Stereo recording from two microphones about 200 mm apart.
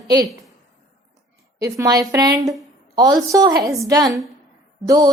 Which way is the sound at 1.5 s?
15° right (ahead or behind).